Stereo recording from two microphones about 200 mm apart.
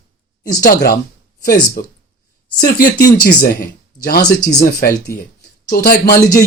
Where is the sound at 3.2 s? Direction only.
50° left (ahead or behind).